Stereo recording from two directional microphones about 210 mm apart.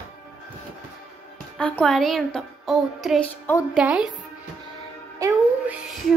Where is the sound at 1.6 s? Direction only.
5° left (ahead or behind).